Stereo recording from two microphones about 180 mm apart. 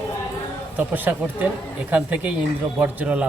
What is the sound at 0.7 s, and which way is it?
Speech, 10° right (ahead or behind).